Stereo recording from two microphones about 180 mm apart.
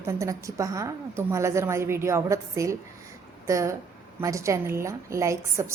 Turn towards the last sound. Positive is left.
turn(degrees=-15)  # may be behind; listen again after turning